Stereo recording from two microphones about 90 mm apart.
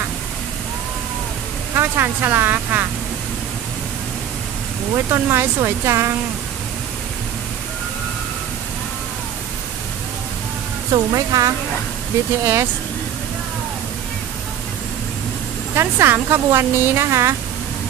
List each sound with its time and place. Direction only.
1.8 s speech: 25° right (ahead or behind)
4.9 s speech: 30° right (ahead or behind)
10.9 s speech: 45° right (ahead or behind)
15.7 s speech: 30° right (ahead or behind)